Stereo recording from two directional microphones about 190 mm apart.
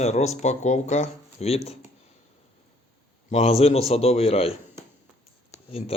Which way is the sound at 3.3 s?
30° left (ahead or behind).